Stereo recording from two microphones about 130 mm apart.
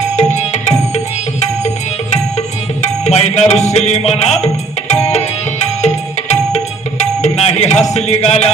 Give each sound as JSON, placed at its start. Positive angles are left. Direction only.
{"t": 0.2, "sound": "music", "side_deg": 60}
{"t": 2.8, "sound": "music", "side_deg": 55}
{"t": 7.0, "sound": "tabla", "side_deg": 55}